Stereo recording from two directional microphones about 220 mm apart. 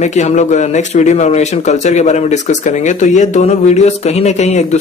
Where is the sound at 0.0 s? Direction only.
30° left (ahead or behind).